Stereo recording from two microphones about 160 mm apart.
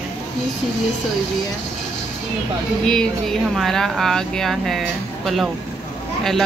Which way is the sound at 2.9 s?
5° left (ahead or behind).